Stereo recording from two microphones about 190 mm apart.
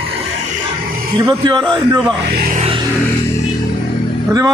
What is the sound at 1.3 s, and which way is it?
Speech, 25° right (ahead or behind).